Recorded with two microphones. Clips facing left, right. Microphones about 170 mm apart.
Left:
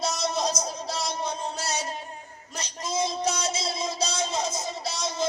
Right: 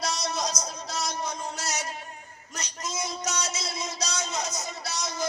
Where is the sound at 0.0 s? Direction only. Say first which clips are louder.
Left 3 dB; 30° left (ahead or behind).